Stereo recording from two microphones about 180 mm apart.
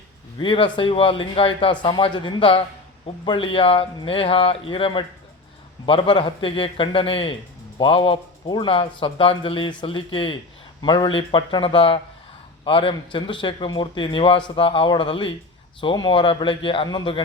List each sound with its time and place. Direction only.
0.3 s speech: 25° left (ahead or behind)